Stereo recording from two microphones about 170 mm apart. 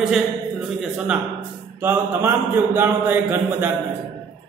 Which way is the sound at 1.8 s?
10° right (ahead or behind).